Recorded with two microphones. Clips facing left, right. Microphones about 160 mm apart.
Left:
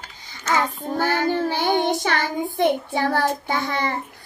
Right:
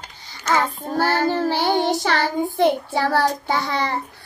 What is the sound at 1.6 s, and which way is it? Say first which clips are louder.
Child singing: right 1 dB; 20° left (ahead or behind).